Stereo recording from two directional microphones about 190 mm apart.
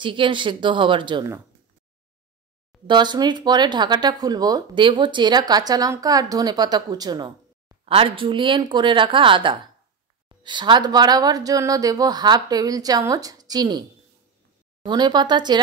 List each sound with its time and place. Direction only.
0.0 s speech: 25° right (ahead or behind)
2.9 s speech: 25° right (ahead or behind)
14.9 s speech: 25° right (ahead or behind)